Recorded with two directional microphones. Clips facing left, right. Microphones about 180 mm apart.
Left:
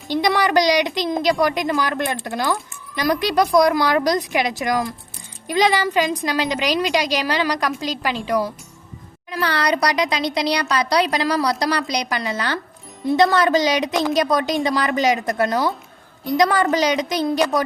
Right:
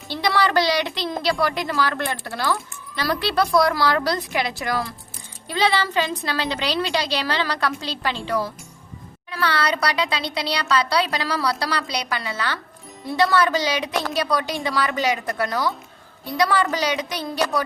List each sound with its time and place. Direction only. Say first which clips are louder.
0.1 s a woman's voice: left 3 dB; 15° left (ahead or behind)